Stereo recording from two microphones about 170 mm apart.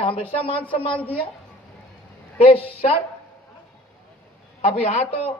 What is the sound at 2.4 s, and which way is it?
Speech, 35° left (ahead or behind).